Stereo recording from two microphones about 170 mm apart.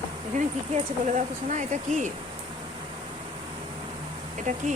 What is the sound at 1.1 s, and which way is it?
Speech, 45° right (ahead or behind).